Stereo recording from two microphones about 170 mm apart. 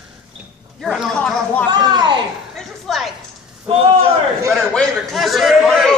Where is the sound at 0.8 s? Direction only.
Centre (ahead or behind).